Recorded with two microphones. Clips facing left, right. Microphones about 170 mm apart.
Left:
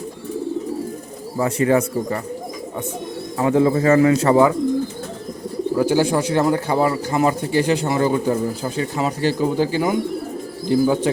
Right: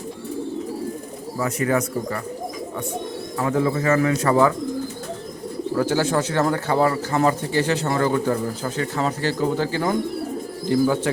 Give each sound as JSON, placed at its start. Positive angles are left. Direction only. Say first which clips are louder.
{"t": 1.4, "sound": "speech", "louder": "left 5 dB", "side_deg": 30}
{"t": 3.3, "sound": "speech", "louder": "left 5 dB", "side_deg": 25}
{"t": 5.7, "sound": "speech", "louder": "left 3 dB", "side_deg": 15}